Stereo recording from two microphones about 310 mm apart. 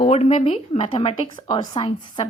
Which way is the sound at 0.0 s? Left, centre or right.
Centre.